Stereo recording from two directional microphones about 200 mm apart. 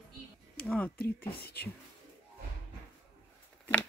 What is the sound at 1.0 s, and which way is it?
Speech, 50° left (ahead or behind).